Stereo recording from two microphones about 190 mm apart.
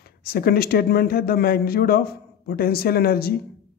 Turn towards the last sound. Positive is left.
turn(degrees=55)  # may be behind; listen again after turning